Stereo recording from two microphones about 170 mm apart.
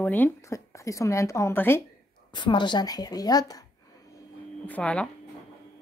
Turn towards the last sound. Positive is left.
turn(degrees=5)  # may be behind; listen again after turning